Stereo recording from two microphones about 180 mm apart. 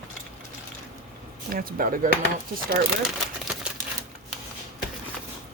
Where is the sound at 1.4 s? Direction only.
55° right (ahead or behind).